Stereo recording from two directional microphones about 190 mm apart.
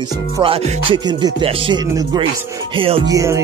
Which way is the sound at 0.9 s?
25° right (ahead or behind).